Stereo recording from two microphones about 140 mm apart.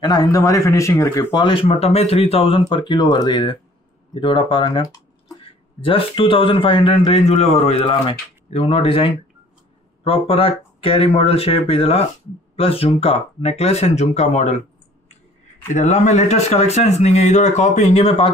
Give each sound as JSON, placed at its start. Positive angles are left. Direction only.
{"t": 0.0, "sound": "speech", "side_deg": 30}
{"t": 15.7, "sound": "speech", "side_deg": 60}